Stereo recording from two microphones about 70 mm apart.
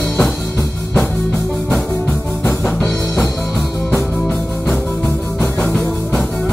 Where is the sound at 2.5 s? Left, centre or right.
Centre.